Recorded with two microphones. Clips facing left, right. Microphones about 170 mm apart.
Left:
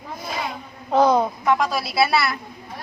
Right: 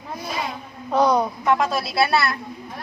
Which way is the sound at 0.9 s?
50° left (ahead or behind).